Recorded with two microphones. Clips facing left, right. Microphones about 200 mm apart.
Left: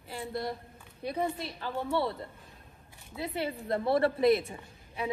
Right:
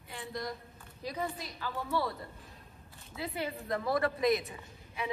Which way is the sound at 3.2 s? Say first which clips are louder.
Left 3 dB; 30° left (ahead or behind).